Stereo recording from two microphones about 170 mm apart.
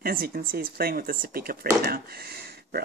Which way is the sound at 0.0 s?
60° right (ahead or behind).